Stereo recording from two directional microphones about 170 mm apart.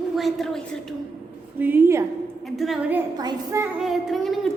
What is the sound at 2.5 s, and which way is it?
Speech, centre (ahead or behind).